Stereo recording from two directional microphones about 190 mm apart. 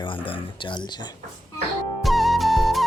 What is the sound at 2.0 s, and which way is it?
Flute, centre (ahead or behind).